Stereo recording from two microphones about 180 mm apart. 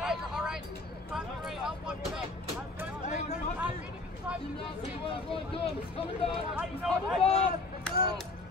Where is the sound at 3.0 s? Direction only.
40° left (ahead or behind).